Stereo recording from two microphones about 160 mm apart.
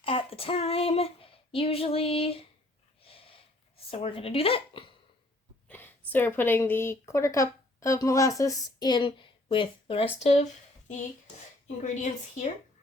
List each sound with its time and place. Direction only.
0.0 s child singing: 35° left (ahead or behind)
3.0 s snort: 35° left (ahead or behind)
3.8 s a woman's voice: 35° left (ahead or behind)
5.6 s a woman's voice: 10° left (ahead or behind); by 10.4 s 35° left (ahead or behind)
11.8 s a woman's voice: 50° left (ahead or behind)